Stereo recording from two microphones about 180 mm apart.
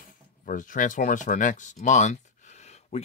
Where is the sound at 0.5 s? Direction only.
45° left (ahead or behind).